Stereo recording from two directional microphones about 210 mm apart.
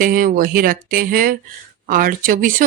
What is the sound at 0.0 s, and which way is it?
Speech, 40° right (ahead or behind).